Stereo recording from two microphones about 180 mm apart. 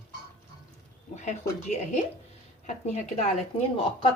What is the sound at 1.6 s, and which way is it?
A woman's voice, 40° left (ahead or behind).